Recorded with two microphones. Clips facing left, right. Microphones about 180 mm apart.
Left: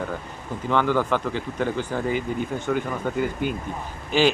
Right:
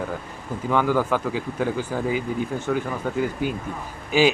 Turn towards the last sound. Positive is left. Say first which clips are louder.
# right 1 dB
turn(degrees=-5)  # may be behind; listen again after turning